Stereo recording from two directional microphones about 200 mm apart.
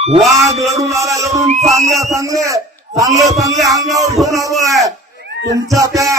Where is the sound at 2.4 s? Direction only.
15° right (ahead or behind).